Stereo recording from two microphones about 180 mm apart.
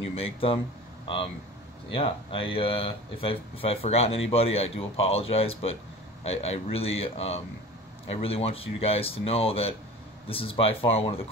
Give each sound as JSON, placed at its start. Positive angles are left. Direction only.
{"t": 0.0, "sound": "speech", "side_deg": 30}